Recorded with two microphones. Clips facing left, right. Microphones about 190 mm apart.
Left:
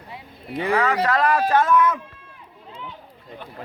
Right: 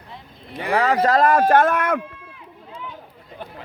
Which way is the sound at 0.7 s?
35° right (ahead or behind).